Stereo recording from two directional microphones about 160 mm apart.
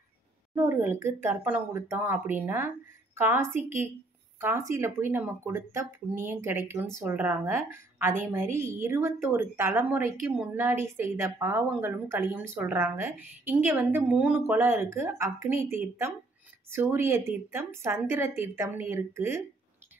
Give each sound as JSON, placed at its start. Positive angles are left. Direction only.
{"t": 0.6, "sound": "a woman's voice", "side_deg": -15}